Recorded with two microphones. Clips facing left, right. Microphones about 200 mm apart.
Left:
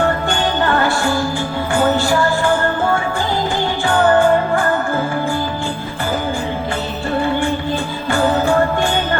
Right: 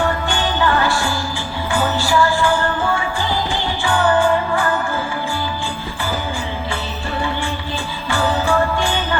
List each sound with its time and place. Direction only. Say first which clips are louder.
1.8 s music: left 6 dB; 55° left (ahead or behind)
3.8 s music: left 3 dB; 45° left (ahead or behind)